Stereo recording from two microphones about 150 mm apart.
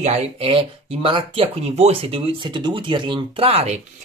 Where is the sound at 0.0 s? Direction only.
40° right (ahead or behind).